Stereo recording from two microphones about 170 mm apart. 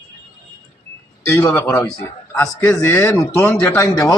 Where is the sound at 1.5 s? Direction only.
15° left (ahead or behind).